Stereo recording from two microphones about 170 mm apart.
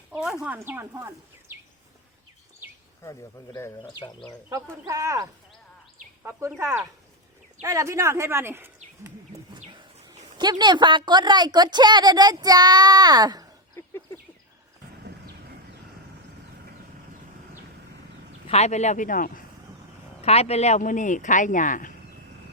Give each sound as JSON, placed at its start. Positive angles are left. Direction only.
{"t": 0.1, "sound": "speech", "side_deg": -5}
{"t": 3.0, "sound": "speech", "side_deg": 20}
{"t": 4.4, "sound": "a woman's voice", "side_deg": -15}
{"t": 6.6, "sound": "speech", "side_deg": -15}
{"t": 9.6, "sound": "bird", "side_deg": -30}
{"t": 10.3, "sound": "a woman's voice", "side_deg": -25}
{"t": 13.7, "sound": "a sound", "side_deg": 15}
{"t": 18.4, "sound": "speech", "side_deg": 40}
{"t": 20.2, "sound": "speech", "side_deg": 35}